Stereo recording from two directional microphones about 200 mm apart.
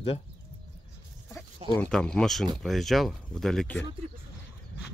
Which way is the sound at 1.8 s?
5° left (ahead or behind).